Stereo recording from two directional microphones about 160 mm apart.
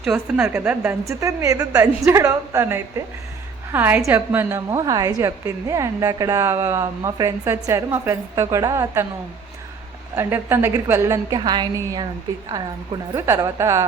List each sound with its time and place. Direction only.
0.3 s a woman's voice: 15° right (ahead or behind)
10.2 s a woman's voice: 15° right (ahead or behind)